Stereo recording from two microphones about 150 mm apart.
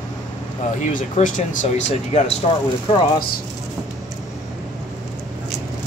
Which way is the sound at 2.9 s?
35° left (ahead or behind).